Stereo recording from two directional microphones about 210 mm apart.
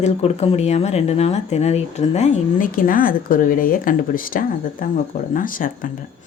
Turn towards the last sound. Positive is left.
turn(degrees=40)  # may be behind; listen again after turning